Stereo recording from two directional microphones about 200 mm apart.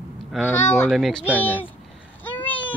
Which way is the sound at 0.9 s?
Centre (ahead or behind).